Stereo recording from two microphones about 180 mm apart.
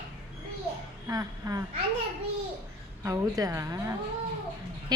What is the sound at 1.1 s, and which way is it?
Speech, 20° right (ahead or behind).